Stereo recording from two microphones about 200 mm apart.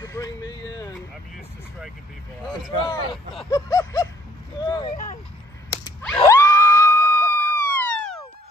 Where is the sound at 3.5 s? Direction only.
15° left (ahead or behind).